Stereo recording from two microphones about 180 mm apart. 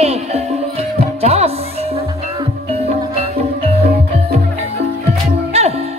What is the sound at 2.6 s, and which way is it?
Music, 35° right (ahead or behind).